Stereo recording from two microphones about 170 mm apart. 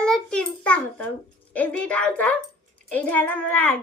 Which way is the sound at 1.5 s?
5° left (ahead or behind).